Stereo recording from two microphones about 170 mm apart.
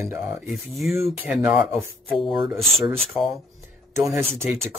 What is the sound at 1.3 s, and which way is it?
Speech, 10° right (ahead or behind).